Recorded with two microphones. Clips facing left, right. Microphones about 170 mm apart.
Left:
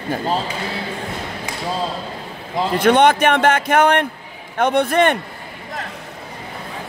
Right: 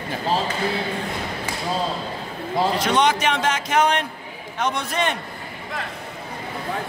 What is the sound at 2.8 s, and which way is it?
Speech, 55° left (ahead or behind).